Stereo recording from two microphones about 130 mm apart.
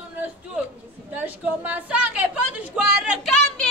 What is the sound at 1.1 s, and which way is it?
A woman's voice, 15° right (ahead or behind).